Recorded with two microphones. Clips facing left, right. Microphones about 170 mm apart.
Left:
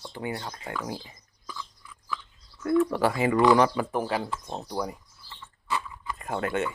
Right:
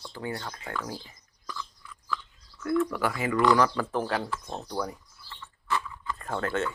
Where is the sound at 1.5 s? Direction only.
10° left (ahead or behind).